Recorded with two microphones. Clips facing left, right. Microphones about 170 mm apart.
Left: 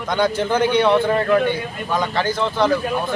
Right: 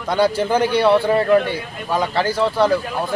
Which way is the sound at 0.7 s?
5° right (ahead or behind).